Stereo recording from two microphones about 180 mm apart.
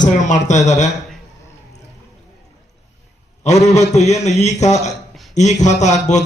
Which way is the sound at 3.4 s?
40° left (ahead or behind).